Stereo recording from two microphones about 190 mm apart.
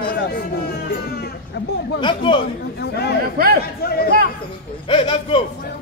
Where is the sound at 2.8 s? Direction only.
60° left (ahead or behind).